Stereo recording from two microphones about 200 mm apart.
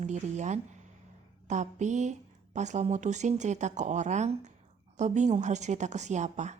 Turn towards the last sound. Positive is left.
turn(degrees=-35)  # may be behind; listen again after turning